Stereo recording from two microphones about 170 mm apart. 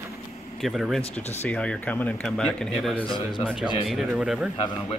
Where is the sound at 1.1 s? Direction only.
10° left (ahead or behind).